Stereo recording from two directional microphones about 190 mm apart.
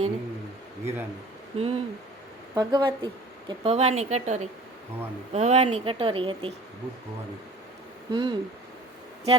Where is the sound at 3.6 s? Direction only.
30° right (ahead or behind).